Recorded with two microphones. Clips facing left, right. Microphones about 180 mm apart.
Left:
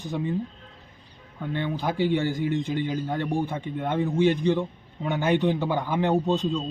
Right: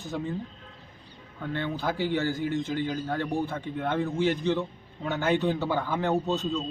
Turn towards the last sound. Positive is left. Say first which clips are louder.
# left 3 dB
turn(degrees=15)  # may be behind; listen again after turning